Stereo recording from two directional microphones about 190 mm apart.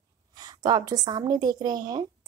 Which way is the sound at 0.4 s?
20° right (ahead or behind).